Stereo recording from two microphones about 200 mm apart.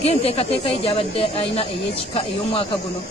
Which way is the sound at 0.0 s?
30° left (ahead or behind).